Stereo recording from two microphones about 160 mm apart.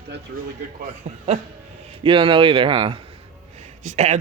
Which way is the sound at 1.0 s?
45° right (ahead or behind).